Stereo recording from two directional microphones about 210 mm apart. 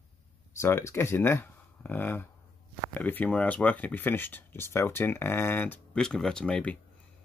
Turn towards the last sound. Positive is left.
turn(degrees=5)  # may be behind; listen again after turning